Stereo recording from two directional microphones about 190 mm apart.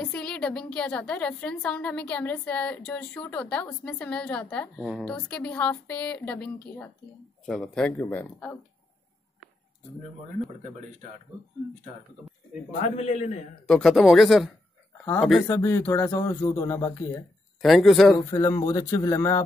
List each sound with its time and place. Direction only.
0.0 s a woman's voice: 5° left (ahead or behind)
12.9 s a man's voice: 35° left (ahead or behind)
13.7 s speech: 5° left (ahead or behind)
15.4 s a woman's voice: 15° left (ahead or behind)
17.6 s speech: centre (ahead or behind)
18.2 s a woman's voice: 15° left (ahead or behind)